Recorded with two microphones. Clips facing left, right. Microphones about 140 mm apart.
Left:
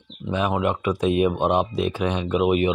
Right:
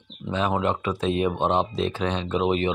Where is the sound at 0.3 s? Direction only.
15° left (ahead or behind).